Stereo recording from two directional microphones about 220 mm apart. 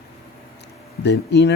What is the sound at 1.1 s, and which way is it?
Speech, 50° left (ahead or behind).